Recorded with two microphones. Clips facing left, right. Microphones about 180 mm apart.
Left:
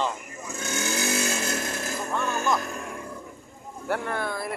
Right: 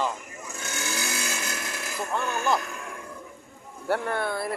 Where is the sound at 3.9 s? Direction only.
30° right (ahead or behind).